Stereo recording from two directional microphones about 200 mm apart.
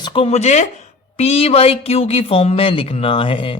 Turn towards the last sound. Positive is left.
turn(degrees=25)  # may be behind; listen again after turning